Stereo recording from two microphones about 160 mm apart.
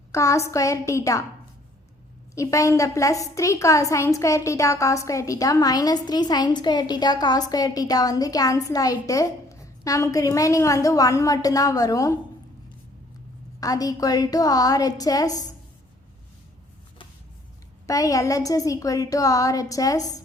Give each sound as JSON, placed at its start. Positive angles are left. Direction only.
{"t": 0.1, "sound": "a woman's voice", "side_deg": 20}
{"t": 2.3, "sound": "a woman's voice", "side_deg": 20}
{"t": 13.6, "sound": "a woman's voice", "side_deg": 20}
{"t": 17.8, "sound": "a woman's voice", "side_deg": 20}